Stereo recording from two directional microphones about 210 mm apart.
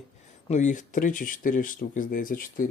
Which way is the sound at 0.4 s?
35° left (ahead or behind).